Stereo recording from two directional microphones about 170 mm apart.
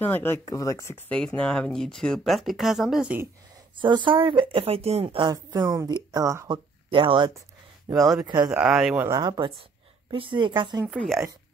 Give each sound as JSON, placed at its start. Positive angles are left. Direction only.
{"t": 0.1, "sound": "speech", "side_deg": 15}
{"t": 3.7, "sound": "speech", "side_deg": -30}
{"t": 6.9, "sound": "speech", "side_deg": -30}
{"t": 8.5, "sound": "speech", "side_deg": -5}
{"t": 9.0, "sound": "speech", "side_deg": -20}
{"t": 10.9, "sound": "speech", "side_deg": 0}